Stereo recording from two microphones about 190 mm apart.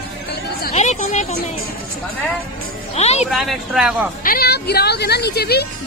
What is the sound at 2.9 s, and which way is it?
Speech, 35° left (ahead or behind).